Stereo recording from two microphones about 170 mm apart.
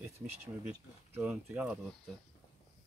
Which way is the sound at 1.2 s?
5° right (ahead or behind).